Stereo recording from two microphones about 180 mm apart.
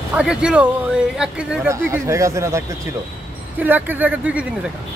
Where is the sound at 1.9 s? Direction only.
15° right (ahead or behind).